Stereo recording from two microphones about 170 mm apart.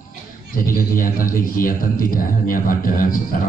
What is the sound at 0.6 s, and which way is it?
A man's voice, 55° left (ahead or behind).